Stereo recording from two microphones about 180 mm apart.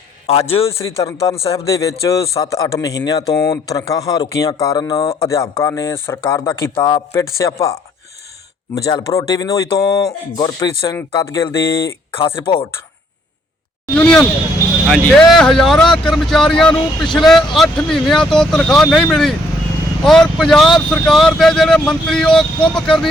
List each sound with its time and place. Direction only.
0.3 s a man's voice: 35° left (ahead or behind)
0.8 s speech: 15° left (ahead or behind)
1.3 s a man's voice: 35° left (ahead or behind)
1.5 s a man's voice: 20° left (ahead or behind)
8.7 s a man's voice: 20° left (ahead or behind)
13.9 s speech: 5° left (ahead or behind)